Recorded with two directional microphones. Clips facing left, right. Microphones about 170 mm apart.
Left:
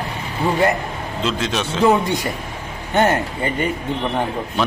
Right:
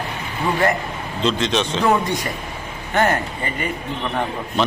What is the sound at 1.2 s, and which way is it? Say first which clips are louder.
Speech: right 3 dB; 5° left (ahead or behind).